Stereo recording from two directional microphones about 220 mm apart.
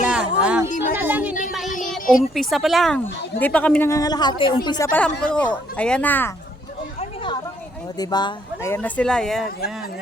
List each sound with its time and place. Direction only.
0.1 s a sound: 5° right (ahead or behind)
1.3 s child singing: 35° left (ahead or behind)
1.9 s speech: centre (ahead or behind)
7.9 s speech: 20° left (ahead or behind); by 9.5 s centre (ahead or behind)